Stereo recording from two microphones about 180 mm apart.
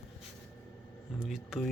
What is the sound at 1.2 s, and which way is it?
Speech, centre (ahead or behind).